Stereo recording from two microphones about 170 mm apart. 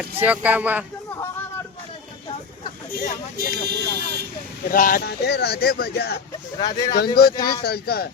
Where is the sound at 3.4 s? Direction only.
70° right (ahead or behind).